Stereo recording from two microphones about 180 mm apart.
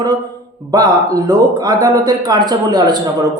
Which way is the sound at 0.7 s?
20° right (ahead or behind).